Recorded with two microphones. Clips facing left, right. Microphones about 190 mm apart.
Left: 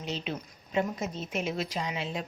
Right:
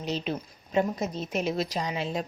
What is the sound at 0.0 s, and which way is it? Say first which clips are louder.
A woman's voice: right 4 dB; 40° right (ahead or behind).